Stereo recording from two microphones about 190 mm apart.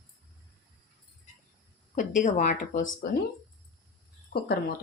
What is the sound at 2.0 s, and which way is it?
A woman's voice, 40° left (ahead or behind).